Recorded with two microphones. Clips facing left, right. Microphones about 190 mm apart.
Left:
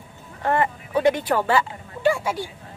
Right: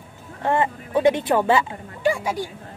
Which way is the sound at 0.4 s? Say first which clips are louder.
Right 1 dB; 20° right (ahead or behind).